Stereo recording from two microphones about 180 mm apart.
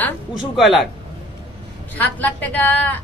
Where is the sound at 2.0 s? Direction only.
10° left (ahead or behind).